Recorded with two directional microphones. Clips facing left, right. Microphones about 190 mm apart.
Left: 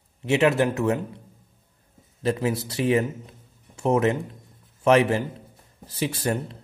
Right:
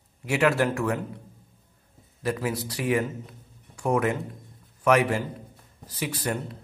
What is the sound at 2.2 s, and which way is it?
A man's voice, 25° left (ahead or behind).